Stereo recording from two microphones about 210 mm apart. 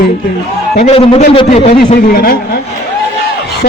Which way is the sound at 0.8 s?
30° left (ahead or behind).